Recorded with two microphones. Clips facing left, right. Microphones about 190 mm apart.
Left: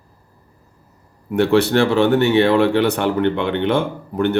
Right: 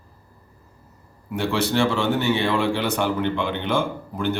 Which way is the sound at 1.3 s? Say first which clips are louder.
Left 8 dB; 60° left (ahead or behind).